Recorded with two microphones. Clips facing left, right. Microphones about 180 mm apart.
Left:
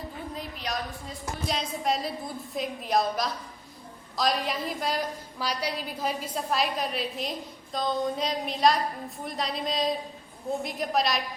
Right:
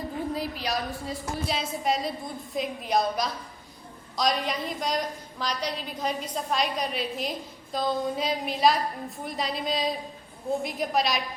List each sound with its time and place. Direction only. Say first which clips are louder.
0.3 s a woman's voice: right 4 dB; 5° right (ahead or behind)